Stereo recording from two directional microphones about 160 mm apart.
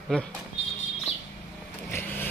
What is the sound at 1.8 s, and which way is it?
Vehicle, 15° left (ahead or behind).